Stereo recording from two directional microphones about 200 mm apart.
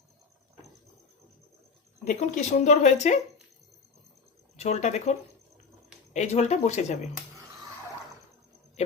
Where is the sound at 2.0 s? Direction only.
40° left (ahead or behind).